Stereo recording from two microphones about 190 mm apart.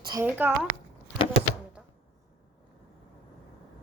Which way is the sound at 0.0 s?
20° right (ahead or behind).